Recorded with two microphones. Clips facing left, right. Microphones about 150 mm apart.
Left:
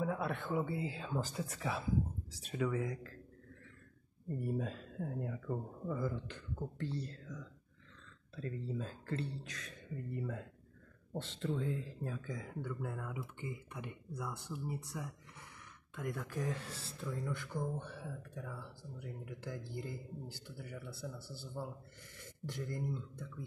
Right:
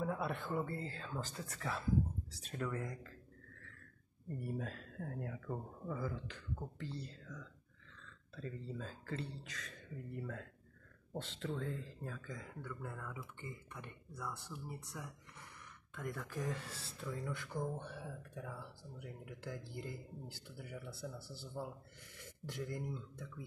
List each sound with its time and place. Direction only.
0.0 s speech: centre (ahead or behind)
4.3 s speech: centre (ahead or behind)
8.4 s speech: 5° left (ahead or behind)
14.7 s speech: 5° left (ahead or behind)